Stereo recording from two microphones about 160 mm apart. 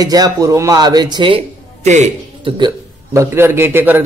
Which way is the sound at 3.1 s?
15° right (ahead or behind).